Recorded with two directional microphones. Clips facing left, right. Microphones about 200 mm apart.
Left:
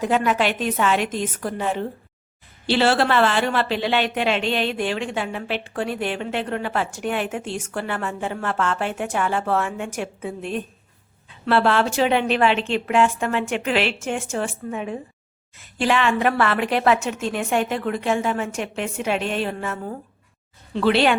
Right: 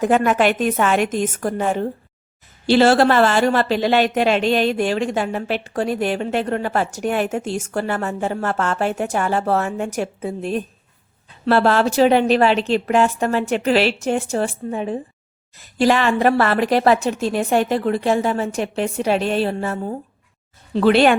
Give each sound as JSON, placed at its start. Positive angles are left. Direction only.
{"t": 0.0, "sound": "a woman's voice", "side_deg": -50}
{"t": 20.7, "sound": "a woman's voice", "side_deg": -45}